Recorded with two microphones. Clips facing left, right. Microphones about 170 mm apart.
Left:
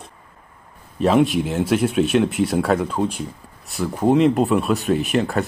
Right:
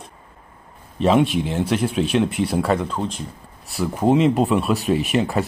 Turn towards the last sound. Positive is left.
turn(degrees=0)  # may be behind; listen again after turning